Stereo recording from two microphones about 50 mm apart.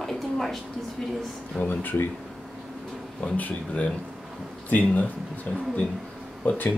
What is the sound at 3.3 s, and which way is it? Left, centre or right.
Speech, left.